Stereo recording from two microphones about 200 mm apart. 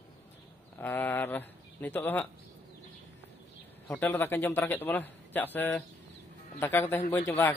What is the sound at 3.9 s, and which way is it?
Speech, 10° left (ahead or behind).